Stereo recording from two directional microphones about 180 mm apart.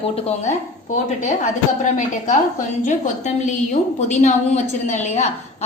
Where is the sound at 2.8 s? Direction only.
45° left (ahead or behind).